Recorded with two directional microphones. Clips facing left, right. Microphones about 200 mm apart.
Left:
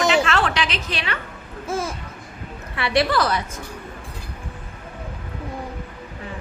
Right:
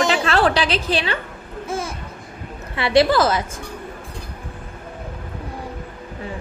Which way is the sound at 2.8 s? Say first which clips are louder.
Right 5 dB; 25° right (ahead or behind).